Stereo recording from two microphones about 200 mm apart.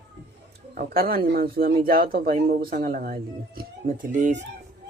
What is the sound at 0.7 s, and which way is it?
Speech, 45° right (ahead or behind).